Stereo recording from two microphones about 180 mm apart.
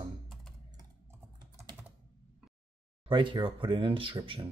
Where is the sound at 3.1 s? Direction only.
30° right (ahead or behind).